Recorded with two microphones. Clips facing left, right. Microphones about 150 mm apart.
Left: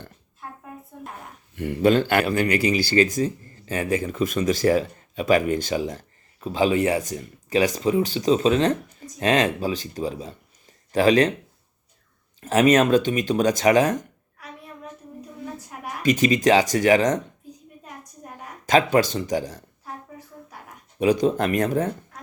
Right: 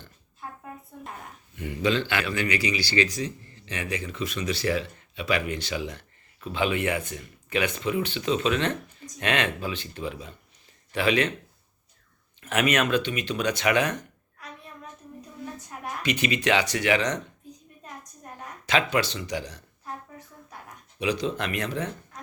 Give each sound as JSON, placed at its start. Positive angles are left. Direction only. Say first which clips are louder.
{"t": 1.5, "sound": "speech", "louder": "left 7 dB", "side_deg": 60}
{"t": 12.4, "sound": "speech", "louder": "left 7 dB", "side_deg": 35}
{"t": 16.0, "sound": "speech", "louder": "left 7 dB", "side_deg": 40}
{"t": 18.6, "sound": "speech", "louder": "left 6 dB", "side_deg": 45}
{"t": 19.8, "sound": "a sound", "louder": "even", "side_deg": 5}
{"t": 21.0, "sound": "speech", "louder": "left 8 dB", "side_deg": 50}